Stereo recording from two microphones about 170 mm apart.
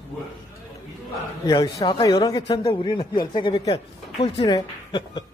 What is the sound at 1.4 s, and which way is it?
A man's voice, 25° left (ahead or behind).